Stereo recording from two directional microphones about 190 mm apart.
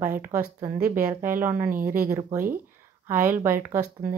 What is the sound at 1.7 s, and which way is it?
Speech, 45° right (ahead or behind).